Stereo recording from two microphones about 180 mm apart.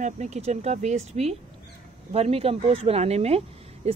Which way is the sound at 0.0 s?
40° right (ahead or behind).